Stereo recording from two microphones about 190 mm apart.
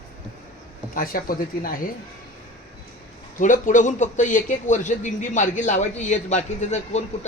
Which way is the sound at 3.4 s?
40° left (ahead or behind).